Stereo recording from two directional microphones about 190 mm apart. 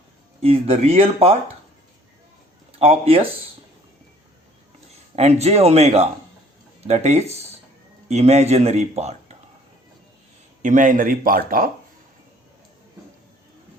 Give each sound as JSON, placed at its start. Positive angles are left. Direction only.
{"t": 0.4, "sound": "speech", "side_deg": -35}
{"t": 2.7, "sound": "speech", "side_deg": -30}
{"t": 5.1, "sound": "speech", "side_deg": -35}
{"t": 10.6, "sound": "speech", "side_deg": -45}